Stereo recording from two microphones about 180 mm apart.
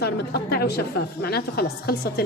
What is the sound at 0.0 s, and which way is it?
A woman's voice, 60° left (ahead or behind).